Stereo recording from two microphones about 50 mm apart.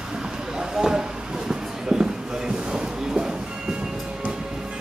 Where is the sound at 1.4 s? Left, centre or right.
Centre.